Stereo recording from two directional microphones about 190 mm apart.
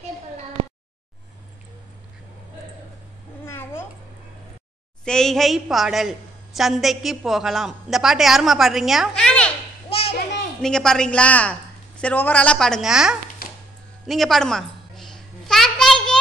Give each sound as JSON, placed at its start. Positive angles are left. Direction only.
{"t": 3.4, "sound": "babbling", "side_deg": 15}
{"t": 5.0, "sound": "a woman's voice", "side_deg": 5}
{"t": 9.8, "sound": "children playing", "side_deg": 30}
{"t": 10.6, "sound": "a woman's voice", "side_deg": 5}
{"t": 13.4, "sound": "a sound", "side_deg": 50}
{"t": 14.0, "sound": "a sound", "side_deg": 0}